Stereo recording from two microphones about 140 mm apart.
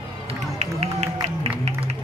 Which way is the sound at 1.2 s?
45° right (ahead or behind).